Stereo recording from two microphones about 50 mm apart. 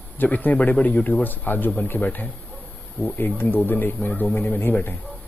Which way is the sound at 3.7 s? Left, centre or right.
Left.